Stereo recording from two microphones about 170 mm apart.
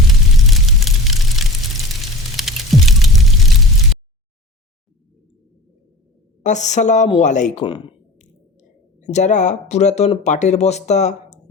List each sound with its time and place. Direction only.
0.4 s a sound: centre (ahead or behind)
6.4 s speech: 45° left (ahead or behind)
9.0 s speech: 45° left (ahead or behind)